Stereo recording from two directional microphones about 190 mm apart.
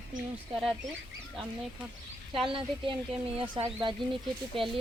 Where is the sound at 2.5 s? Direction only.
25° right (ahead or behind).